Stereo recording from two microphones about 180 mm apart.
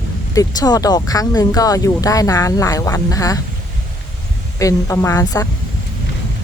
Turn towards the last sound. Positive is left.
turn(degrees=15)  # may be behind; listen again after turning